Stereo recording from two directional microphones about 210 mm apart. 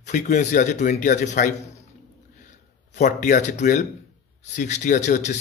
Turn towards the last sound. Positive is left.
turn(degrees=35)  # may be behind; listen again after turning